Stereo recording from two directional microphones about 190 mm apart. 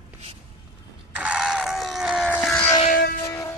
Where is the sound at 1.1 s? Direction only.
5° right (ahead or behind).